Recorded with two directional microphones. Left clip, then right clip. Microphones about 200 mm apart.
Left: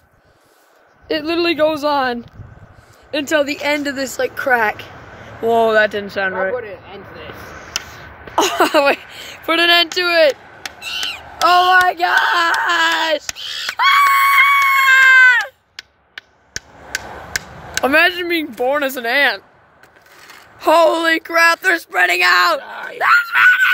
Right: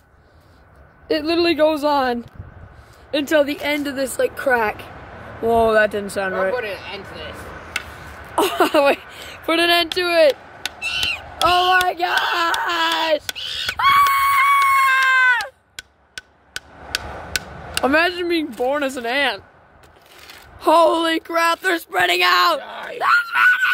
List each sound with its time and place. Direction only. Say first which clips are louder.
1.0 s speech: left 1 dB; centre (ahead or behind)
3.1 s speech: left 1 dB; 10° left (ahead or behind)
4.2 s speech: left 3 dB; centre (ahead or behind)
6.5 s speech: right 1 dB; 40° left (ahead or behind)
8.4 s speech: left 2 dB; 5° left (ahead or behind)
10.8 s crow: right 2 dB; 25° right (ahead or behind)
11.7 s speech: left 5 dB; 10° left (ahead or behind)
13.4 s screaming: left 1 dB; 30° right (ahead or behind)
13.7 s screaming: left 3 dB; 5° left (ahead or behind)
17.8 s speech: left 4 dB; 5° right (ahead or behind)
20.5 s speech: left 2 dB; 5° right (ahead or behind)